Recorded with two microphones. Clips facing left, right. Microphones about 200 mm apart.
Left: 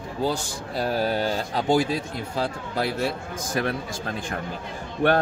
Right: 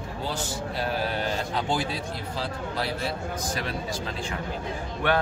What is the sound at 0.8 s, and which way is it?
Speech, 40° left (ahead or behind).